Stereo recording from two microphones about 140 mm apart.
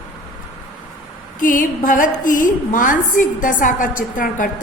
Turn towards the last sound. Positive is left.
turn(degrees=70)  # may be behind; listen again after turning